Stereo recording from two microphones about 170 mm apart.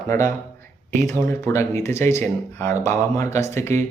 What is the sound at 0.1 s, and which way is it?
Speech, 15° left (ahead or behind).